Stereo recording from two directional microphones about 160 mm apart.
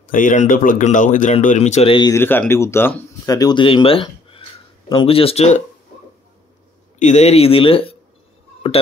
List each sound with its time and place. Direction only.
0.0 s speech: 55° left (ahead or behind); by 2.0 s 35° left (ahead or behind)
2.0 s speech: 15° left (ahead or behind); by 5.6 s 40° left (ahead or behind)
7.0 s speech: 45° left (ahead or behind)